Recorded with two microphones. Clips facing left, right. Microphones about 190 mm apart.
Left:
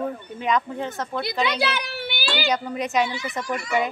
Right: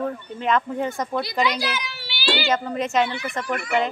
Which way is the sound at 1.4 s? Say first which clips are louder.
Even; 60° left (ahead or behind).